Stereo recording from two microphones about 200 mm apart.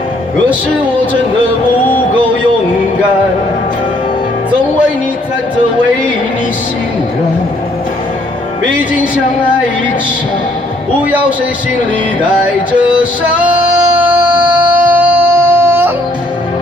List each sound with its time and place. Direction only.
13.9 s music: 5° right (ahead or behind)